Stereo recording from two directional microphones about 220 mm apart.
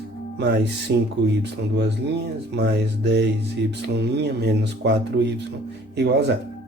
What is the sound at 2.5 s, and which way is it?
Speech, 50° right (ahead or behind).